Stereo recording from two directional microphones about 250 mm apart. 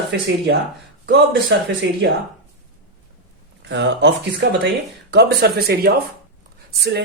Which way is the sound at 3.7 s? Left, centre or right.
Right.